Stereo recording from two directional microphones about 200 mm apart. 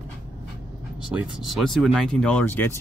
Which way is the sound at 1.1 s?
5° right (ahead or behind).